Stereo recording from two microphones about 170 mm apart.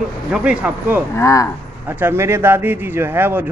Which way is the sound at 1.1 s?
20° left (ahead or behind).